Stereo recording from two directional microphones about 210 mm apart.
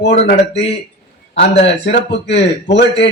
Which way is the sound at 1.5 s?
55° left (ahead or behind).